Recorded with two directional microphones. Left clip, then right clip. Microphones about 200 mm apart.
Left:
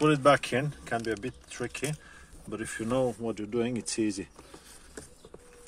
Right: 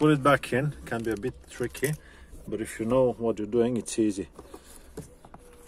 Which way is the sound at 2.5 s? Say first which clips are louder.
Right 4 dB; 30° left (ahead or behind).